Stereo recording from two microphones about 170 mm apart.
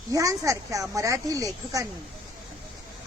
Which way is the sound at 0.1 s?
20° right (ahead or behind).